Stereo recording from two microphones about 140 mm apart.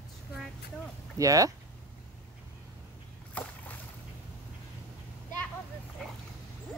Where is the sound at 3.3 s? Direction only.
10° left (ahead or behind).